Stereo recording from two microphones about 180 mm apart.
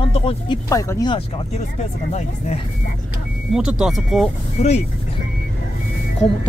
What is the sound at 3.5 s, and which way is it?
Speech, 5° right (ahead or behind).